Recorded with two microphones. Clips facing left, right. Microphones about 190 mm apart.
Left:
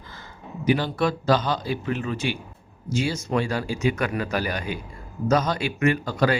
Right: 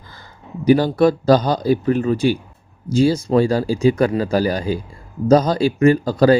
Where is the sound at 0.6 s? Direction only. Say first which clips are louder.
Right 9 dB; 40° right (ahead or behind).